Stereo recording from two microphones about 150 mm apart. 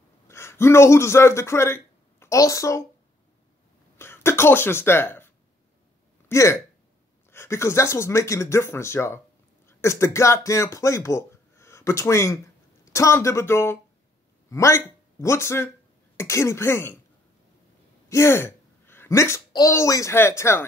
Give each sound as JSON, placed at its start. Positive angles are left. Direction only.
{"t": 0.3, "sound": "a man's voice", "side_deg": 15}
{"t": 4.0, "sound": "speech", "side_deg": 15}
{"t": 18.0, "sound": "a child's voice", "side_deg": 20}